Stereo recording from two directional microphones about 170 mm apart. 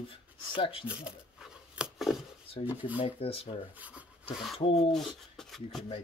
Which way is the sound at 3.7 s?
10° right (ahead or behind).